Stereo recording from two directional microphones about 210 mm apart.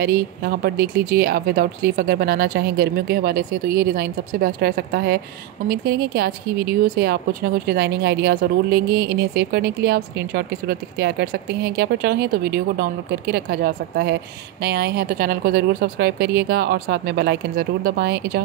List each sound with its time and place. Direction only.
0.0 s speech: 45° right (ahead or behind)